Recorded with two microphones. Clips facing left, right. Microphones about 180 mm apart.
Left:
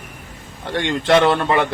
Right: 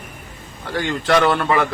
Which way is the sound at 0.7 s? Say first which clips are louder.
Left 2 dB; 25° left (ahead or behind).